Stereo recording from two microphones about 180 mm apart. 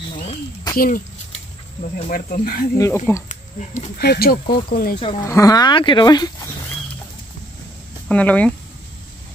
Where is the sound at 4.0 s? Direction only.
60° left (ahead or behind).